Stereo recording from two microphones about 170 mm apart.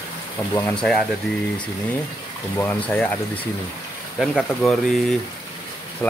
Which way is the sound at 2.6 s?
10° left (ahead or behind).